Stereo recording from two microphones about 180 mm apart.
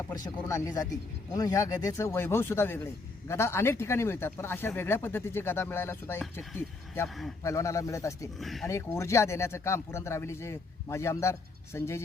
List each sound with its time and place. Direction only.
0.3 s speech: 15° left (ahead or behind)
7.1 s a man's voice: centre (ahead or behind)
7.4 s speech: 15° left (ahead or behind)
8.4 s a man's voice: centre (ahead or behind)
8.6 s speech: 15° left (ahead or behind)